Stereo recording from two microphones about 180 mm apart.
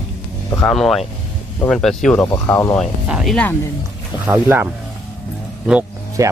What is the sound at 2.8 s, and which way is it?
Speech, centre (ahead or behind).